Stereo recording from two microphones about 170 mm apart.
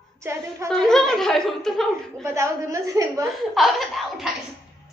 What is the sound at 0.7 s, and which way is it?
A woman's voice, centre (ahead or behind).